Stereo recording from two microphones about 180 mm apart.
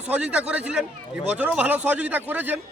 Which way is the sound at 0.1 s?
5° right (ahead or behind).